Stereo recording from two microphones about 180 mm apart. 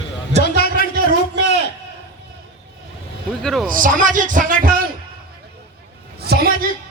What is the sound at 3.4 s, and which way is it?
Speech, centre (ahead or behind).